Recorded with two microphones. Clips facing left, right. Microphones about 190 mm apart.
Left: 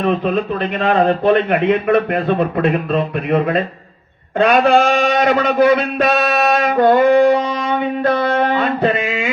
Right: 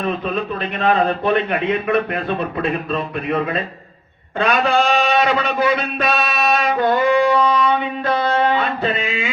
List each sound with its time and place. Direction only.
0.9 s a man's voice: 50° left (ahead or behind)